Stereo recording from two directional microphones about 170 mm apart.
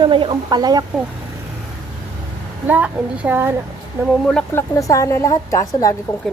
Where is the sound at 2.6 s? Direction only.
10° right (ahead or behind).